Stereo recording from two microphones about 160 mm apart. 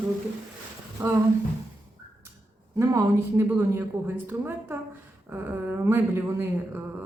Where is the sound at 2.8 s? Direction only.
15° right (ahead or behind).